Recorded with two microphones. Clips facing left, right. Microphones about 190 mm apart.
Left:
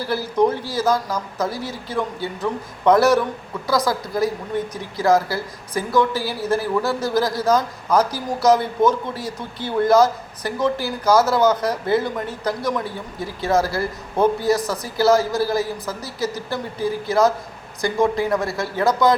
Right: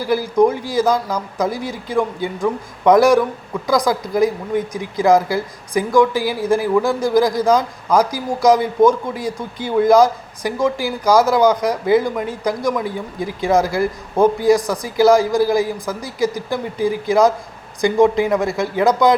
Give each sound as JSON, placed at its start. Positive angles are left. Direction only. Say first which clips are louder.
{"t": 0.0, "sound": "a woman's voice", "louder": "right 4 dB", "side_deg": -15}